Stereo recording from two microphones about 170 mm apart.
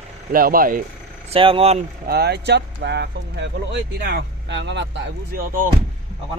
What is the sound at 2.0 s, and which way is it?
Speech, 70° right (ahead or behind).